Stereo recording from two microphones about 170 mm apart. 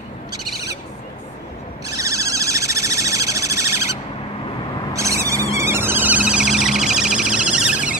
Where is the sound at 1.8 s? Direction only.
20° right (ahead or behind).